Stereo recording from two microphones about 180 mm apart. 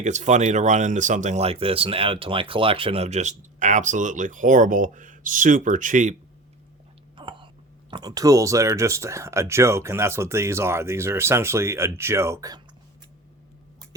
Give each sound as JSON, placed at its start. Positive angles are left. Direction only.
{"t": 0.0, "sound": "speech", "side_deg": -40}
{"t": 7.2, "sound": "speech", "side_deg": -25}